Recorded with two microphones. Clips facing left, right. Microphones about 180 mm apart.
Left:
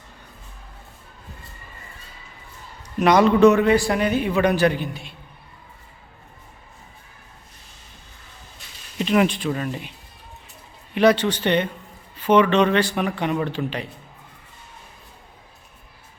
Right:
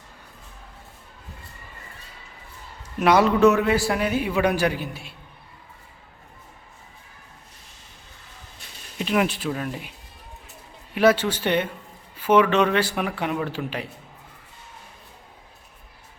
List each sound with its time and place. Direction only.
3.0 s a man's voice: 5° right (ahead or behind)
9.0 s a man's voice: 5° right (ahead or behind)
10.9 s a man's voice: 5° right (ahead or behind)